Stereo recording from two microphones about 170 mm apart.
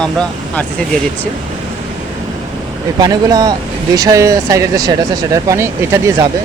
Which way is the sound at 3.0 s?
20° right (ahead or behind).